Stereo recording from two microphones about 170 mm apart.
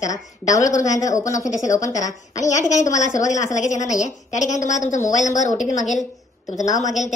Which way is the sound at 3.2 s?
45° left (ahead or behind).